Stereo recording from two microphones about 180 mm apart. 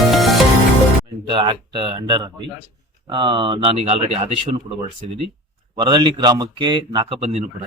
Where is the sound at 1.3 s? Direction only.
25° right (ahead or behind).